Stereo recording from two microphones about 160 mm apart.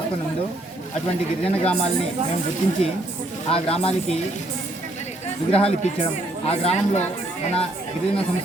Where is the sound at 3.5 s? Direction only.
35° left (ahead or behind).